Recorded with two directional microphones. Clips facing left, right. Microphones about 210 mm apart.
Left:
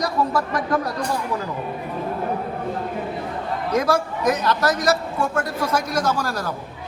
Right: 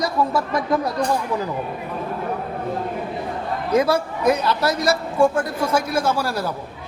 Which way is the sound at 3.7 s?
10° right (ahead or behind).